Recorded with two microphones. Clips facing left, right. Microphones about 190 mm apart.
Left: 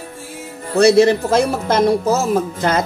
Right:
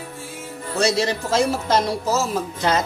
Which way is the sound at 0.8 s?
55° left (ahead or behind).